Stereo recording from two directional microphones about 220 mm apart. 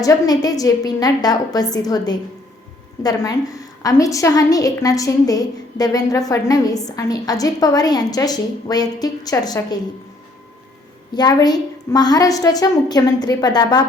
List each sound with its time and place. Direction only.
0.0 s a woman's voice: 15° left (ahead or behind)
11.1 s a woman's voice: 20° left (ahead or behind)